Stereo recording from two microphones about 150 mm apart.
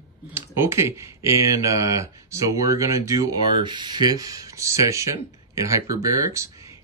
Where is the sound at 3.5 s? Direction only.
30° right (ahead or behind).